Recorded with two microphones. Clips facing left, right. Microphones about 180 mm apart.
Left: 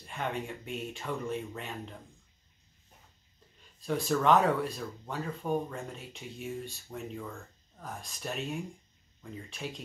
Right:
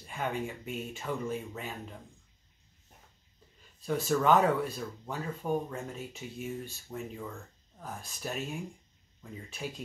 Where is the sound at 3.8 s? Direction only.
Centre (ahead or behind).